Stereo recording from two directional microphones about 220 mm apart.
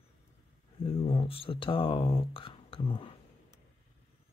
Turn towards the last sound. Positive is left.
turn(degrees=25)  # may be behind; listen again after turning